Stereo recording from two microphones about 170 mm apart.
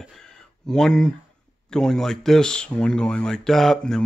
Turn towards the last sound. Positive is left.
turn(degrees=0)  # may be behind; listen again after turning